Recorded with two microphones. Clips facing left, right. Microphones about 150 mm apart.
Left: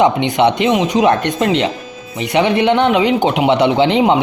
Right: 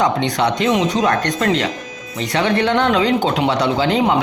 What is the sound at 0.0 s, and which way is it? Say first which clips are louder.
Speech: left 5 dB; 25° left (ahead or behind).